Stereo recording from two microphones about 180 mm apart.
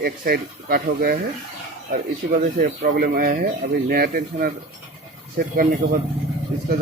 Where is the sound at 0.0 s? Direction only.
55° right (ahead or behind).